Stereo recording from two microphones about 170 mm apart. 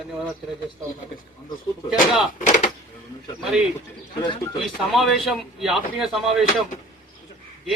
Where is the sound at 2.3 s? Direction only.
50° left (ahead or behind).